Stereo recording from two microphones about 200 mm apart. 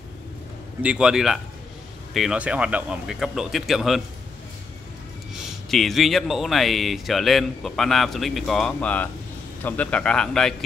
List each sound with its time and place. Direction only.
0.8 s speech: 5° right (ahead or behind)
5.7 s speech: centre (ahead or behind)